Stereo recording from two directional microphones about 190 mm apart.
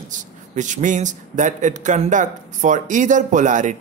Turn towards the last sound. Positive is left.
turn(degrees=-40)  # may be behind; listen again after turning